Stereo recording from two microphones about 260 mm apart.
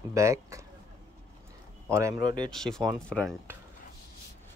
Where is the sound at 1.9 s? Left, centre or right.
Centre.